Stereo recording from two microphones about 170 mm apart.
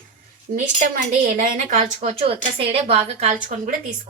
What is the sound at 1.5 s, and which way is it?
A woman's voice, 45° right (ahead or behind).